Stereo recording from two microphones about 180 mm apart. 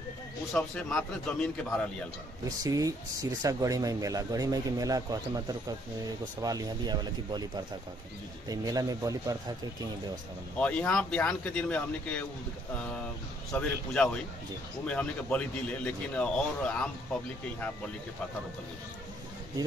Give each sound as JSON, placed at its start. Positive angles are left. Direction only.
{"t": 0.6, "sound": "a man's voice", "side_deg": 5}
{"t": 2.6, "sound": "speech", "side_deg": -20}
{"t": 8.5, "sound": "speech", "side_deg": -20}
{"t": 10.6, "sound": "speech", "side_deg": 5}
{"t": 13.5, "sound": "a man's voice", "side_deg": 5}